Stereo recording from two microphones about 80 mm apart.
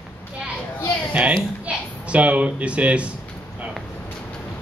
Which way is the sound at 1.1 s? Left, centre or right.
Centre.